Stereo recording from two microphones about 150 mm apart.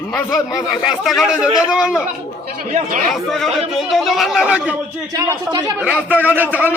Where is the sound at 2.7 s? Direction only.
60° right (ahead or behind).